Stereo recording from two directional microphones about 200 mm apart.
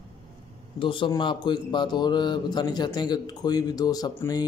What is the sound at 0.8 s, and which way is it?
A man's voice, 25° left (ahead or behind).